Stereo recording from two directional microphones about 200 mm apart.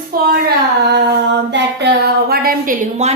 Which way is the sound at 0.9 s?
60° right (ahead or behind).